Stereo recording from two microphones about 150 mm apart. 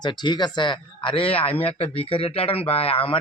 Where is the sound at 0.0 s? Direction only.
30° left (ahead or behind).